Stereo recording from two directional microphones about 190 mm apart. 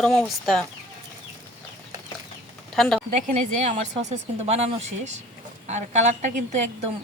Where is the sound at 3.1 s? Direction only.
35° right (ahead or behind).